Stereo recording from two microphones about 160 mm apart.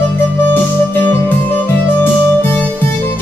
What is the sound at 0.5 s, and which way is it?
Music, 10° left (ahead or behind).